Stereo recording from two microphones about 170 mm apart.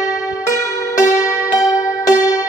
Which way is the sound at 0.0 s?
20° left (ahead or behind).